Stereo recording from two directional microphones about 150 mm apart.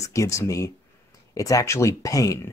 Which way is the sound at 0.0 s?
20° left (ahead or behind).